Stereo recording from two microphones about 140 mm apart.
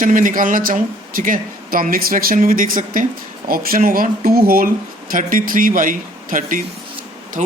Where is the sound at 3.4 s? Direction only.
90° right; by 6.6 s 70° right (ahead or behind).